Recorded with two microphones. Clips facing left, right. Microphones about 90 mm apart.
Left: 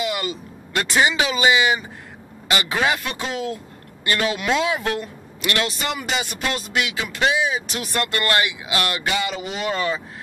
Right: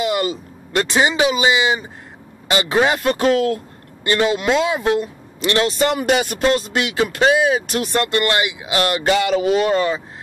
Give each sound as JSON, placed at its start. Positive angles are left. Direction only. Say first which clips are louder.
{"t": 0.0, "sound": "a man's voice", "louder": "right 6 dB", "side_deg": -35}
{"t": 3.2, "sound": "speech", "louder": "right 10 dB", "side_deg": -60}
{"t": 4.0, "sound": "speech", "louder": "right 5 dB", "side_deg": -25}
{"t": 6.4, "sound": "speech", "louder": "right 7 dB", "side_deg": -35}
{"t": 7.9, "sound": "speech", "louder": "right 3 dB", "side_deg": -25}
{"t": 9.1, "sound": "speech", "louder": "right 11 dB", "side_deg": -50}
{"t": 9.6, "sound": "a man's voice", "louder": "right 6 dB", "side_deg": -40}